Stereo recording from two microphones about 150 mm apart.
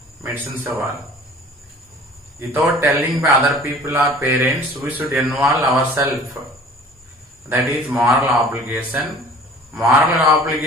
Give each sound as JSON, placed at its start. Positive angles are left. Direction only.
{"t": 0.2, "sound": "speech", "side_deg": -15}
{"t": 2.4, "sound": "a man's voice", "side_deg": -10}
{"t": 7.5, "sound": "a man's voice", "side_deg": -10}